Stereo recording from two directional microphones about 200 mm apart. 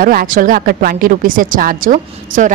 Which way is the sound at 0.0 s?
45° right (ahead or behind).